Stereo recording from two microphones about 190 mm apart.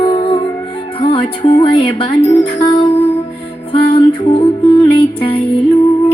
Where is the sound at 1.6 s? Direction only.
30° left (ahead or behind).